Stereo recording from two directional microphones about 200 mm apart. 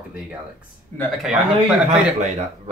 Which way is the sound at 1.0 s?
Centre (ahead or behind).